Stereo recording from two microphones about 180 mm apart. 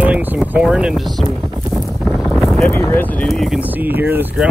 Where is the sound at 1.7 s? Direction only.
Centre (ahead or behind).